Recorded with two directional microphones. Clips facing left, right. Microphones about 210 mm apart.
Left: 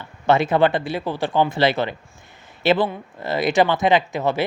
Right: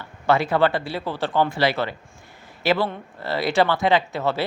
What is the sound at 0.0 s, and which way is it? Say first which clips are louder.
Speech: left 2 dB; 20° left (ahead or behind).